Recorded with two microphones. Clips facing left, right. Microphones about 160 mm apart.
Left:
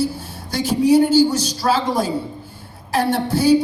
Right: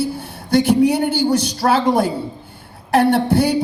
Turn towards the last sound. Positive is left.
turn(degrees=-60)  # may be behind; listen again after turning